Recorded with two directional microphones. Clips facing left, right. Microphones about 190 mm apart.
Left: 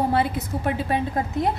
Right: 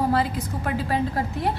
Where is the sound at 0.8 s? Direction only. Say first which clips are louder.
Even; 20° left (ahead or behind).